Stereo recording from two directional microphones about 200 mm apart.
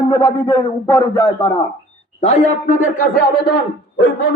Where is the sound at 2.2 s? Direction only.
35° left (ahead or behind).